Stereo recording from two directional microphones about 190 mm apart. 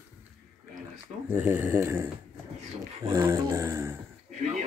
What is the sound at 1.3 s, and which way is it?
Speech, 10° right (ahead or behind).